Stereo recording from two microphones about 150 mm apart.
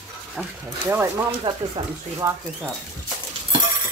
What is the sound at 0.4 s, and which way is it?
Speech, 5° right (ahead or behind).